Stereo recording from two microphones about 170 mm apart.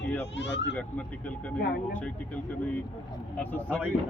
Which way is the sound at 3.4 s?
10° left (ahead or behind).